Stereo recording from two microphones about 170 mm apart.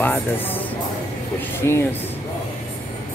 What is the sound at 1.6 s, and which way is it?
Speech, 15° left (ahead or behind).